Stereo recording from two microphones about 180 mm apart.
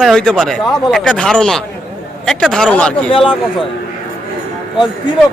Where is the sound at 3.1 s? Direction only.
30° left (ahead or behind).